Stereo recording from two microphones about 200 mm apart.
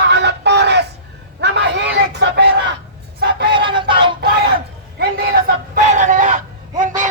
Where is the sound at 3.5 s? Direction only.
25° right (ahead or behind).